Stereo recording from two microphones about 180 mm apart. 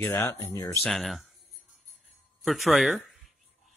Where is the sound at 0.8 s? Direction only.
Centre (ahead or behind).